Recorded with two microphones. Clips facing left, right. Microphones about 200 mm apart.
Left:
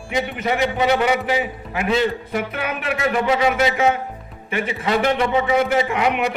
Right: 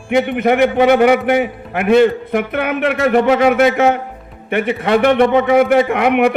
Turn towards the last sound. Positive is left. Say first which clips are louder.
# right 7 dB
turn(degrees=-55)  # may be behind; listen again after turning